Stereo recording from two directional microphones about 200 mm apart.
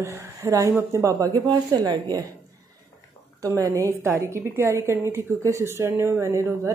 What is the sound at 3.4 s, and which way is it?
A woman's voice, 15° right (ahead or behind).